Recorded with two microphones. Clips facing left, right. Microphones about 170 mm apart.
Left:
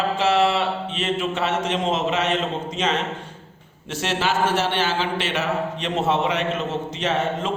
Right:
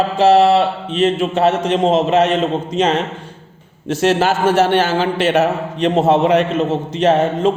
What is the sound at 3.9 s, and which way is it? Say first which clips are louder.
A man's voice: right 9 dB; 40° right (ahead or behind).